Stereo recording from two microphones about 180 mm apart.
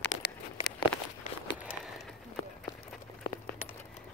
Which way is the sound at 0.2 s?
65° left (ahead or behind).